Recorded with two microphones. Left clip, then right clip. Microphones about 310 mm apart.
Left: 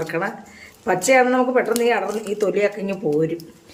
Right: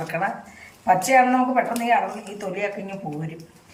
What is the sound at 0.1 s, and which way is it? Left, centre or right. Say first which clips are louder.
Speech: left 1 dB; centre.